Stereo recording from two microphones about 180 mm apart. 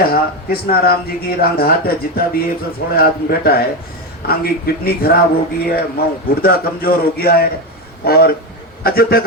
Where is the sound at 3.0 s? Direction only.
60° left (ahead or behind).